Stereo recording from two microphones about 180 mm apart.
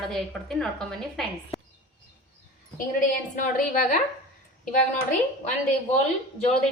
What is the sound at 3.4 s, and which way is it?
Speech, 45° left (ahead or behind).